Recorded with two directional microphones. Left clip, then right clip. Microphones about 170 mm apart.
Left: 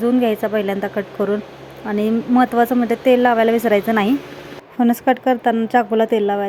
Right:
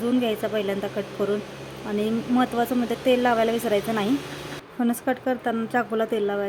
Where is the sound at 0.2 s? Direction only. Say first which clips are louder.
Left 7 dB; 25° left (ahead or behind).